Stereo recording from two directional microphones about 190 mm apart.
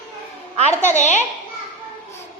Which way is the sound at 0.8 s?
40° left (ahead or behind).